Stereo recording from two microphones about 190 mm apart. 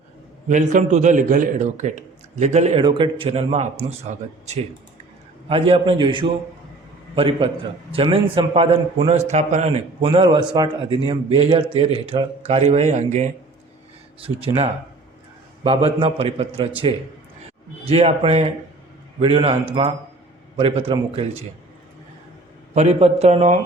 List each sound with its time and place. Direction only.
0.4 s a man's voice: 40° right (ahead or behind)
22.7 s a man's voice: 35° right (ahead or behind)